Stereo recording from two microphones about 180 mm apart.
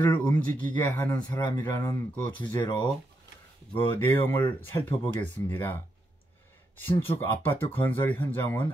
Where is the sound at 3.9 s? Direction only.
10° left (ahead or behind).